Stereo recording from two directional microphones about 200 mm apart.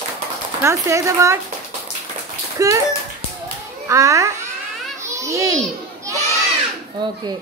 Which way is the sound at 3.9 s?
15° right (ahead or behind).